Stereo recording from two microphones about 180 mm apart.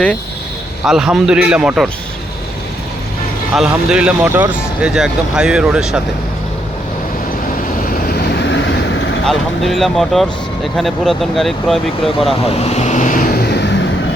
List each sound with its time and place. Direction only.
0.9 s speech: 5° right (ahead or behind)
3.5 s speech: 5° right (ahead or behind)
7.9 s vehicle: 55° left (ahead or behind); by 9.2 s 90° left
9.2 s speech: centre (ahead or behind)
12.5 s vehicle: 35° left (ahead or behind); by 13.7 s 65° left (ahead or behind)